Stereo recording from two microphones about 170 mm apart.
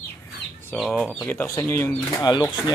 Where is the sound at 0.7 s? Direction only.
Centre (ahead or behind).